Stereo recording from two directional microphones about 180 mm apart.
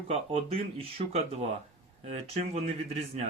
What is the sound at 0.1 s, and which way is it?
Speech, 30° right (ahead or behind).